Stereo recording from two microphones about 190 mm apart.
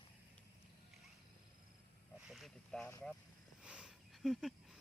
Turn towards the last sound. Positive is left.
turn(degrees=0)  # may be behind; listen again after turning